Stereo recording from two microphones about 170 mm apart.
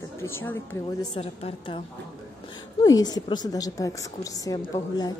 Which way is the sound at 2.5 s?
25° left (ahead or behind).